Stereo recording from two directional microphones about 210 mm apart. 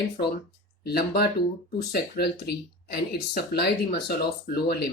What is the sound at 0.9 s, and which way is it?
Speech, 50° left (ahead or behind).